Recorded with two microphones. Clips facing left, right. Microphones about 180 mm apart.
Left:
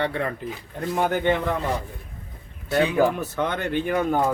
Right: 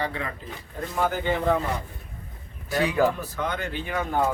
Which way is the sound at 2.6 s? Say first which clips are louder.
Left 4 dB; 25° left (ahead or behind).